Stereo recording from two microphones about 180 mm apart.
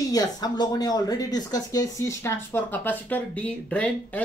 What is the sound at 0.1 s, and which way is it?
Speech, 20° left (ahead or behind).